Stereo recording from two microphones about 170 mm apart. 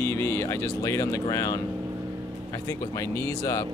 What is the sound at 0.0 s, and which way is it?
Speech, 15° left (ahead or behind).